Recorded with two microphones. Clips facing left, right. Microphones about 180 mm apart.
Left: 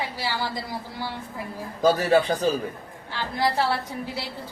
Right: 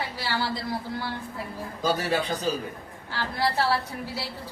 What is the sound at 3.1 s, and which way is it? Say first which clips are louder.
Speech: left 2 dB; 20° left (ahead or behind).